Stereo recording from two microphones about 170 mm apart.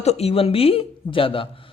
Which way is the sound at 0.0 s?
40° left (ahead or behind).